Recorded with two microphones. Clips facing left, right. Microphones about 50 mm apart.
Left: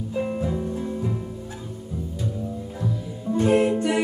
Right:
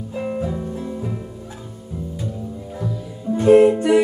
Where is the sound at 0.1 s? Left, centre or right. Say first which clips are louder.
Right 1 dB; centre.